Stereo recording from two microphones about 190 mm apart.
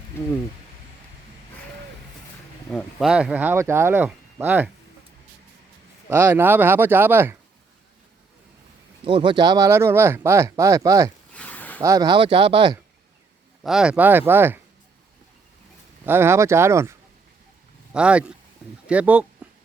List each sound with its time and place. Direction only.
2.7 s speech: centre (ahead or behind)
6.1 s speech: 15° right (ahead or behind)
9.0 s speech: 25° right (ahead or behind)
11.3 s a sound: 10° left (ahead or behind)
11.8 s speech: 20° right (ahead or behind)
13.6 s speech: 5° right (ahead or behind)
16.0 s speech: 10° right (ahead or behind)
17.9 s speech: 5° right (ahead or behind)